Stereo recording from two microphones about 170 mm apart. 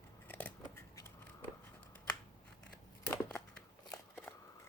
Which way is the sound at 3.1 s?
10° left (ahead or behind).